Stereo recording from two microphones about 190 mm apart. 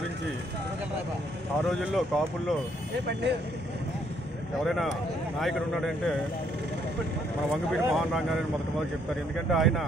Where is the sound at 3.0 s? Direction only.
65° right (ahead or behind).